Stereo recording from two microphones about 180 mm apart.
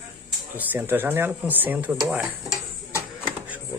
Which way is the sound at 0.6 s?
10° right (ahead or behind).